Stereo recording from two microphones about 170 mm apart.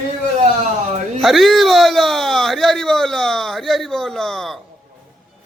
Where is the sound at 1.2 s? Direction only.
Centre (ahead or behind).